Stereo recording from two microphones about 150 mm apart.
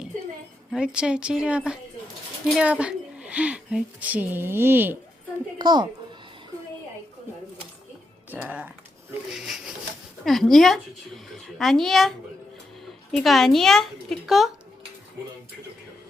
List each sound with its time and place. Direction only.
0.7 s speech: 5° right (ahead or behind)
5.5 s a woman's voice: 30° right (ahead or behind)
8.3 s speech: 10° right (ahead or behind)
9.3 s rub: 5° right (ahead or behind)
10.2 s a woman's voice: centre (ahead or behind)